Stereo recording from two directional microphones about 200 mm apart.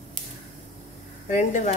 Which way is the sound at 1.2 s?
40° left (ahead or behind).